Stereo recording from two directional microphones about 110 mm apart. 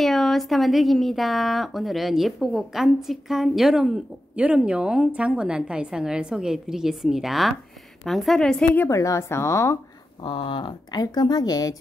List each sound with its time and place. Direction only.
0.0 s a woman's voice: centre (ahead or behind)
8.8 s speech: 30° left (ahead or behind)
10.2 s speech: 50° left (ahead or behind)